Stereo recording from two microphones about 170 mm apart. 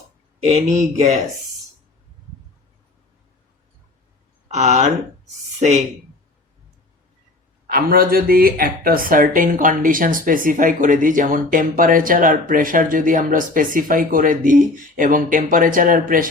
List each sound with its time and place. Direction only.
0.4 s speech: 40° right (ahead or behind)
4.4 s speech: 40° right (ahead or behind)
7.7 s speech: 60° right (ahead or behind)